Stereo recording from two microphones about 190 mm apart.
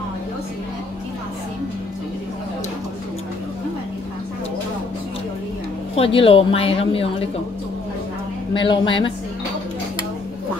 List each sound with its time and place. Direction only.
5.9 s speech: 30° left (ahead or behind)
8.5 s speech: 25° left (ahead or behind)